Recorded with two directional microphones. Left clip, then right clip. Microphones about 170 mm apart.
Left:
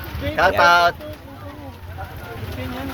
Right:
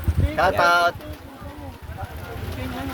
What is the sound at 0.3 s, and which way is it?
Speech, 30° right (ahead or behind).